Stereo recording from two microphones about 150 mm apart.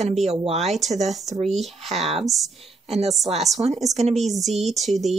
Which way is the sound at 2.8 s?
45° right (ahead or behind).